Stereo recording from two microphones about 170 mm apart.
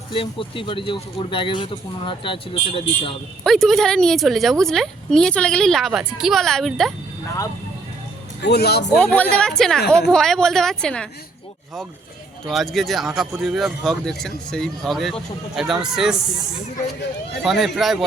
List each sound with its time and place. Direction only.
0.1 s speech: 30° left (ahead or behind)
3.4 s a woman's voice: centre (ahead or behind)
8.4 s speech: 75° left (ahead or behind)
9.0 s a woman's voice: 5° left (ahead or behind)
12.5 s a woman's voice: centre (ahead or behind)
17.4 s a woman's voice: centre (ahead or behind)